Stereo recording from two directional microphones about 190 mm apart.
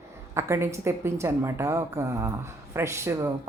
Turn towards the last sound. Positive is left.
turn(degrees=-15)  # may be behind; listen again after turning